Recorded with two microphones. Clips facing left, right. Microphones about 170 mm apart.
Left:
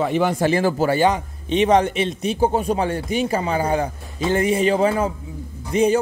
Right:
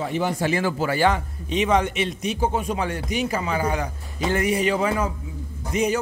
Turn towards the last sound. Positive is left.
turn(degrees=30)  # may be behind; listen again after turning